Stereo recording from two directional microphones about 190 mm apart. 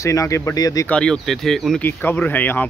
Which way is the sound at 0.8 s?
5° left (ahead or behind).